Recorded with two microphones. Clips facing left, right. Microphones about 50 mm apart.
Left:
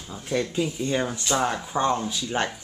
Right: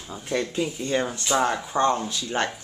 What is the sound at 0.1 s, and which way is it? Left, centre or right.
Speech, centre.